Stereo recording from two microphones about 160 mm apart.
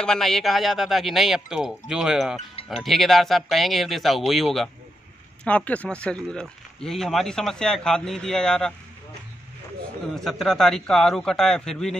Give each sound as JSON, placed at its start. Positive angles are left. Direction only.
{"t": 0.0, "sound": "speech", "side_deg": 5}
{"t": 10.1, "sound": "speech", "side_deg": 0}